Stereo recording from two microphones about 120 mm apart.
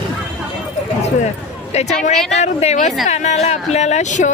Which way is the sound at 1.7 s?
70° left (ahead or behind).